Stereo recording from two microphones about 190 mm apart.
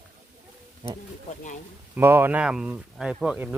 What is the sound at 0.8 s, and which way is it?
Speech, 20° right (ahead or behind).